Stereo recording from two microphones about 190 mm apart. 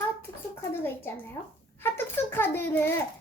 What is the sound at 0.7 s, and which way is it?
A child's voice, 10° left (ahead or behind).